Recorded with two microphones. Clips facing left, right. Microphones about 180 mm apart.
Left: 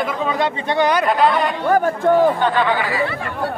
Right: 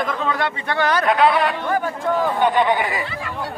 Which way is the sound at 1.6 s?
45° left (ahead or behind).